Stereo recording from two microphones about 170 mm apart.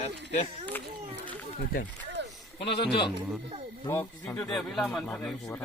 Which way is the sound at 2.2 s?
90° right.